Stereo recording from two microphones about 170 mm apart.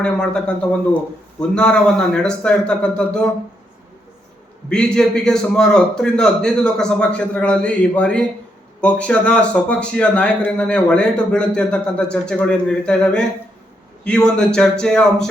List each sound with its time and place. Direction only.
0.0 s a man's voice: 5° left (ahead or behind)
4.7 s a man's voice: 5° left (ahead or behind)